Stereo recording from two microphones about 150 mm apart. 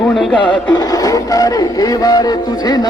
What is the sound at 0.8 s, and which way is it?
Music, 25° left (ahead or behind).